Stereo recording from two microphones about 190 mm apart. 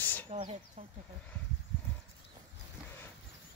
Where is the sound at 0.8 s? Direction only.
30° right (ahead or behind).